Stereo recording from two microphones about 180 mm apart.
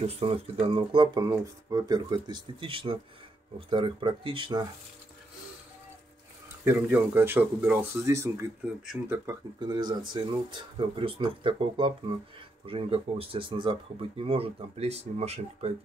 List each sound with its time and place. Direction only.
0.0 s speech: 35° right (ahead or behind)
6.6 s speech: 10° right (ahead or behind); by 15.7 s 35° right (ahead or behind)